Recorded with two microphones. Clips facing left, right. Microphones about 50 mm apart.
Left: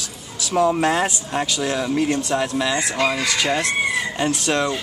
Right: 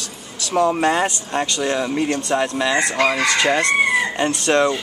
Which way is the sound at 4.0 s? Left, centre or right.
Centre.